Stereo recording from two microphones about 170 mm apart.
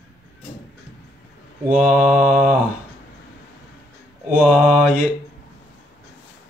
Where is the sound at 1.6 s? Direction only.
5° right (ahead or behind).